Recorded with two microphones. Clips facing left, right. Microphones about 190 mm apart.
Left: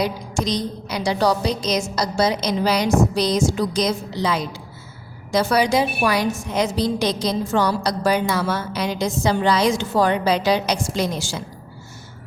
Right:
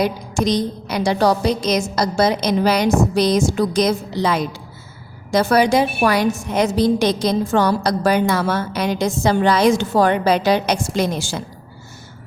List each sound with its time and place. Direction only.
0.0 s a woman's voice: 55° right (ahead or behind)